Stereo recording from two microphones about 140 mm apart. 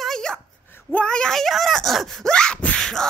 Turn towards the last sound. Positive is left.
turn(degrees=5)  # may be behind; listen again after turning